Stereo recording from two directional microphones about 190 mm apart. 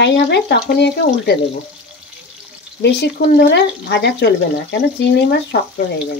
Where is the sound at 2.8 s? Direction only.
65° left (ahead or behind).